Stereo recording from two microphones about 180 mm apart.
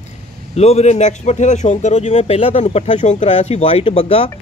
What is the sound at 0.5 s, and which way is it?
Speech, 35° left (ahead or behind).